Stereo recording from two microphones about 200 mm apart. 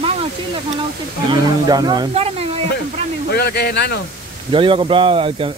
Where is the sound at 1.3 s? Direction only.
20° right (ahead or behind).